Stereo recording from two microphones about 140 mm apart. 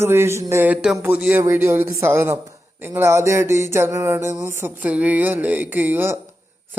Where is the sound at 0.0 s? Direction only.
15° right (ahead or behind).